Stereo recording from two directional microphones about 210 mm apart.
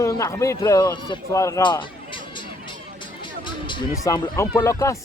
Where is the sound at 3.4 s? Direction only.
20° left (ahead or behind).